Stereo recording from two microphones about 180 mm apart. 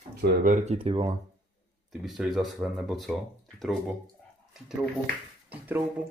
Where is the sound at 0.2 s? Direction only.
50° right (ahead or behind); by 1.1 s 35° right (ahead or behind).